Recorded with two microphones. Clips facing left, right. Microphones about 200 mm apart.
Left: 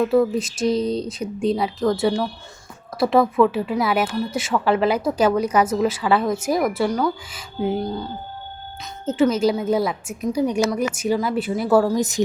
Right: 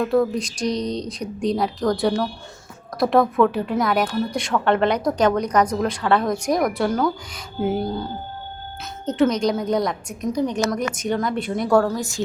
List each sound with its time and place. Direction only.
0.0 s speech: 5° left (ahead or behind)
11.9 s a woman's voice: 20° left (ahead or behind)